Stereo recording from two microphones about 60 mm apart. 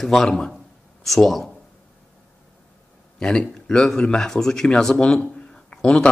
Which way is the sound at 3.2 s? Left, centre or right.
Centre.